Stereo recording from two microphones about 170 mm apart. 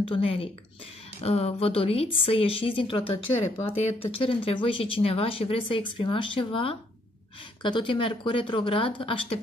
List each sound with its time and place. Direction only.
0.1 s speech: 35° left (ahead or behind)